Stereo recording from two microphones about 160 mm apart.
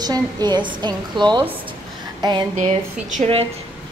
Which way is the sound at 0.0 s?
25° right (ahead or behind).